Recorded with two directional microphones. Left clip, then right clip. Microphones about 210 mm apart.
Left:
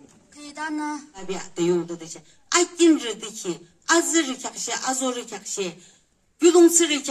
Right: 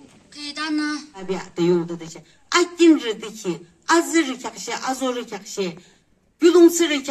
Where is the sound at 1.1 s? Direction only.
55° left (ahead or behind).